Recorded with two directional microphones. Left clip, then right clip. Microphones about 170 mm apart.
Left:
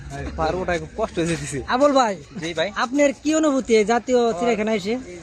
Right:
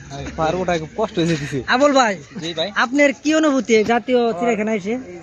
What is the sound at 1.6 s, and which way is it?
A man's voice, 10° left (ahead or behind).